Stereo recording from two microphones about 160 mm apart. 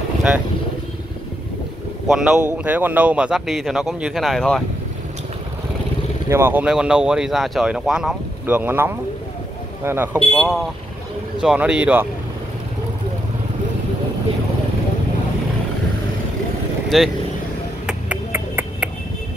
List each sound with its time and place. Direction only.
2.0 s speech: 5° right (ahead or behind)
6.2 s speech: 15° right (ahead or behind)
10.1 s speech: 5° left (ahead or behind)
16.9 s speech: centre (ahead or behind)
17.8 s a sound: 10° right (ahead or behind)